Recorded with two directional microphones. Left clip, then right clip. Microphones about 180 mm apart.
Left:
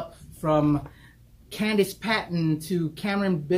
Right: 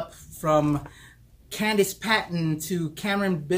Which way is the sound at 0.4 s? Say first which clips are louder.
Right 1 dB; 20° right (ahead or behind).